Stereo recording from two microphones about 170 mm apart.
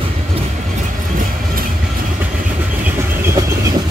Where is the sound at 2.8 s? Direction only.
15° right (ahead or behind).